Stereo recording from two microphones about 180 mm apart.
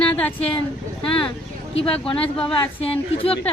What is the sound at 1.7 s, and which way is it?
Speech, 30° left (ahead or behind).